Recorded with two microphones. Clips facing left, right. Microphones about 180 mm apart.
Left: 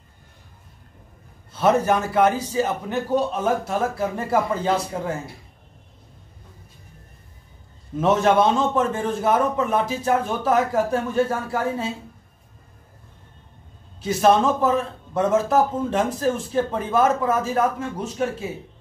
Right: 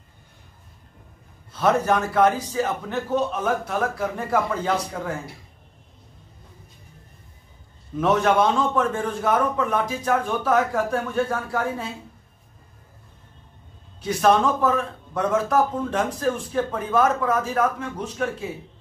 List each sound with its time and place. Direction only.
1.9 s a man's voice: 10° left (ahead or behind)
3.4 s a man's voice: 25° left (ahead or behind)
8.0 s a man's voice: 25° left (ahead or behind)
14.0 s a man's voice: 25° left (ahead or behind)